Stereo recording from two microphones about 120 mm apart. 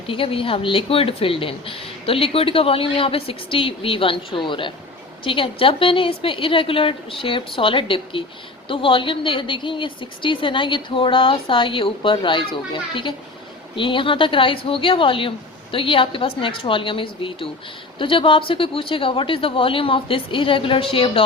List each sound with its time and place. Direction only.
0.1 s a woman's voice: 50° left (ahead or behind)